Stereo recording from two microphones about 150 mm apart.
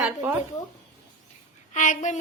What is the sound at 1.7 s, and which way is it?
Child singing, 55° left (ahead or behind).